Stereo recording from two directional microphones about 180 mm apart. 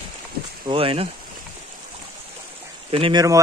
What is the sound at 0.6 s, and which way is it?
Speech, 30° right (ahead or behind).